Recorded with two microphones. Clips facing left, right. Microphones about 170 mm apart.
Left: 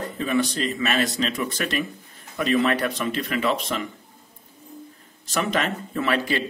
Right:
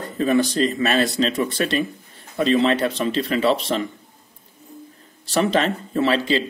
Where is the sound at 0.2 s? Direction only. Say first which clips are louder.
Right 6 dB; 35° right (ahead or behind).